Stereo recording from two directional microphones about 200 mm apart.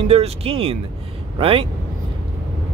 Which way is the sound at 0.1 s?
30° right (ahead or behind).